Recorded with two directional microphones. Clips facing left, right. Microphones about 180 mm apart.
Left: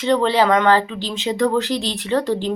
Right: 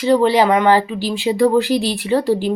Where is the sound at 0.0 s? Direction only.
5° right (ahead or behind).